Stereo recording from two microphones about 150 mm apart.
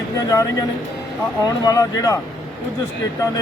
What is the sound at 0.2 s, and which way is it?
Speech, 25° left (ahead or behind).